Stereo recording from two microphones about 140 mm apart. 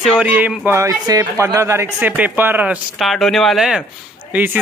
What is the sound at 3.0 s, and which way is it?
A child's voice, centre (ahead or behind).